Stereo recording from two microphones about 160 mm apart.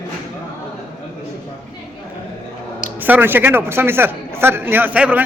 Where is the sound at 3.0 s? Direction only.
10° right (ahead or behind).